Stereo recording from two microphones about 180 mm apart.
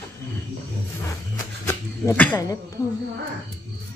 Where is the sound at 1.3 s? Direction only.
15° left (ahead or behind).